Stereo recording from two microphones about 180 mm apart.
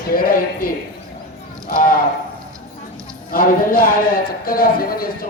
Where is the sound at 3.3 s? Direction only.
55° left (ahead or behind).